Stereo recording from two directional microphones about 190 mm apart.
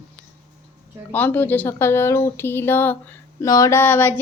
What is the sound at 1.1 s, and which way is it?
A woman's voice, 10° left (ahead or behind).